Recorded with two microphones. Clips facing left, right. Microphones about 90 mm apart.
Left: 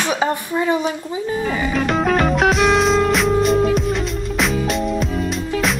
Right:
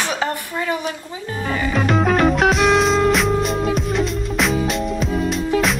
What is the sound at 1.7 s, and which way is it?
Music, centre (ahead or behind).